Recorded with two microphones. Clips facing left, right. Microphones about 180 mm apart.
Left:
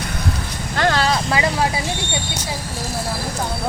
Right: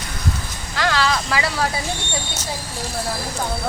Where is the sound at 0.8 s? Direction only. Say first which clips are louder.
Left 2 dB; 45° left (ahead or behind).